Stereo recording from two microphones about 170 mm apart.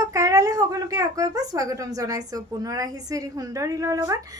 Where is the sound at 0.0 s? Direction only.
20° right (ahead or behind).